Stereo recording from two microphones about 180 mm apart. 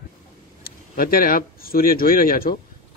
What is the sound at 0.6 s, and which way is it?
Speech, 55° left (ahead or behind).